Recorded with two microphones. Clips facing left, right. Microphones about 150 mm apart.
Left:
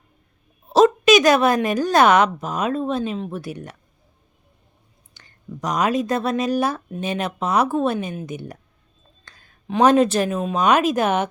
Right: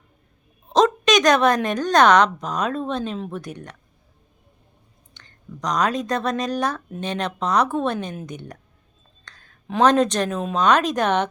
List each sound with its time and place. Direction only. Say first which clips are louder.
0.7 s a woman's voice: left 4 dB; 5° left (ahead or behind)
5.1 s speech: left 4 dB; 10° left (ahead or behind)
9.2 s a sound: left 3 dB; 10° left (ahead or behind)
9.8 s speech: left 2 dB; 5° left (ahead or behind)